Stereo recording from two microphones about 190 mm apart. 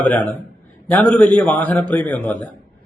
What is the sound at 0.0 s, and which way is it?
A man's voice, 10° left (ahead or behind).